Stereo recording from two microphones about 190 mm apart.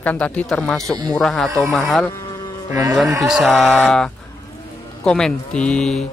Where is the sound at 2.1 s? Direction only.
20° left (ahead or behind).